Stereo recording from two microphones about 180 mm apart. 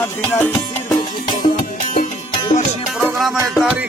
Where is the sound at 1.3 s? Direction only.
45° left (ahead or behind).